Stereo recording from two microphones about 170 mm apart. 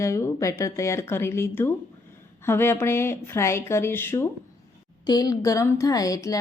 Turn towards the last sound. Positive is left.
turn(degrees=20)  # may be behind; listen again after turning